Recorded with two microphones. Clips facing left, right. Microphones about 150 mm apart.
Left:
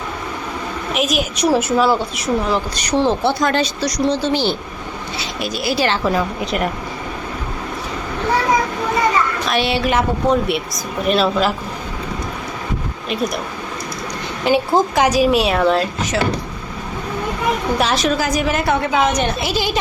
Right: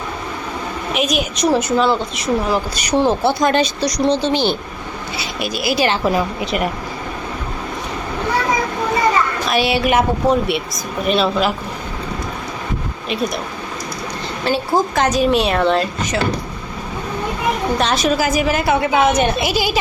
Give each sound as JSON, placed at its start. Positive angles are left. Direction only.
{"t": 0.9, "sound": "a woman's voice", "side_deg": 0}
{"t": 2.5, "sound": "speech", "side_deg": -10}
{"t": 6.4, "sound": "a woman's voice", "side_deg": 0}
{"t": 9.5, "sound": "speech", "side_deg": -5}
{"t": 11.0, "sound": "a woman's voice", "side_deg": 0}
{"t": 13.1, "sound": "a woman's voice", "side_deg": 0}
{"t": 14.4, "sound": "a woman's voice", "side_deg": 15}
{"t": 17.7, "sound": "a woman's voice", "side_deg": 5}